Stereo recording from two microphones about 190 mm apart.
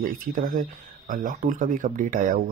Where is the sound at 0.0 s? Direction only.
45° right (ahead or behind).